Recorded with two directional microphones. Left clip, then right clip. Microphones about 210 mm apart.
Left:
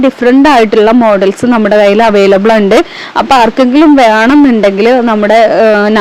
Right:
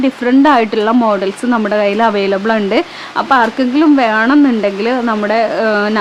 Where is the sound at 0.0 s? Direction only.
25° left (ahead or behind).